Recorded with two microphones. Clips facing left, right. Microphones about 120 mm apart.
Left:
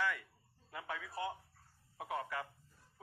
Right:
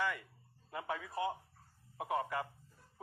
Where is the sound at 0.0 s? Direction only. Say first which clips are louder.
Right 1 dB; 5° right (ahead or behind).